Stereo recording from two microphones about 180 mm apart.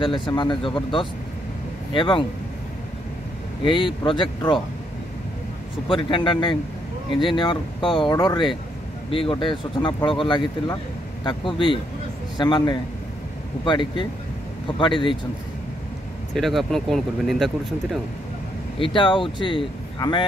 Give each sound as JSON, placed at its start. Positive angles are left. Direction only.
{"t": 0.0, "sound": "speech", "side_deg": 25}
{"t": 3.7, "sound": "speech", "side_deg": 25}
{"t": 5.9, "sound": "speech", "side_deg": 25}
{"t": 16.3, "sound": "speech", "side_deg": 0}
{"t": 18.8, "sound": "speech", "side_deg": 25}